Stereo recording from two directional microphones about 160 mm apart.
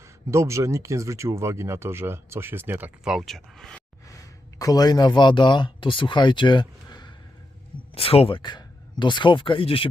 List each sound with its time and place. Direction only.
0.0 s speech: 15° right (ahead or behind); by 3.8 s 5° left (ahead or behind)
4.5 s speech: 20° left (ahead or behind)